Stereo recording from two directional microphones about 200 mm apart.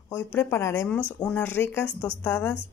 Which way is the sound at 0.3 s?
10° left (ahead or behind).